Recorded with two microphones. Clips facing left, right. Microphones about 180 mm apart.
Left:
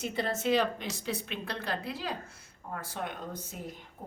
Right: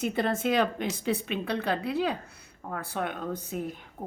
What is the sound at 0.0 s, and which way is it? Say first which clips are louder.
A woman's voice: right 4 dB; 55° right (ahead or behind).